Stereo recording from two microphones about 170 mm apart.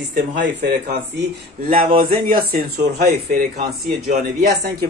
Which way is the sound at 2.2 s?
55° right (ahead or behind).